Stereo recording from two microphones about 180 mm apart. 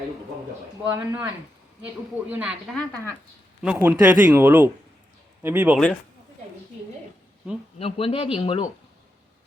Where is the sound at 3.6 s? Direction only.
5° right (ahead or behind).